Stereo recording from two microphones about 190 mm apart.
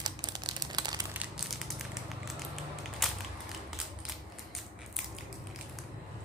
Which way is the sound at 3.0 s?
Centre (ahead or behind).